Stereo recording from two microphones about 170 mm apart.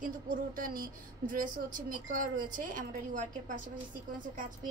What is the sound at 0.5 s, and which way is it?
A woman's voice, 55° right (ahead or behind).